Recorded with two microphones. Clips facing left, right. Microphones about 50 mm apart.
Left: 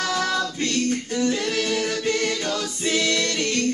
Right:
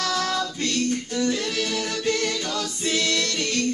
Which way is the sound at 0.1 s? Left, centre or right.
Centre.